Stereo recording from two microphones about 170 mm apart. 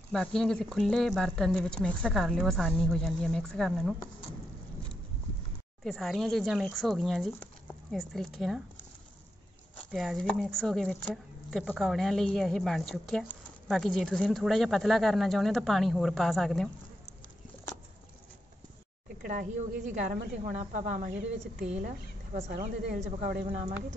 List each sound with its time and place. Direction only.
0.1 s speech: 5° left (ahead or behind)
5.9 s speech: centre (ahead or behind)
9.9 s speech: centre (ahead or behind)
19.2 s a woman's voice: 45° right (ahead or behind)
23.4 s speech: 40° right (ahead or behind)